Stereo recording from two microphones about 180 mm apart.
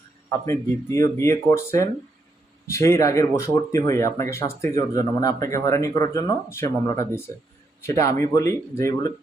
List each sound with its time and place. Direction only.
0.3 s speech: 15° left (ahead or behind)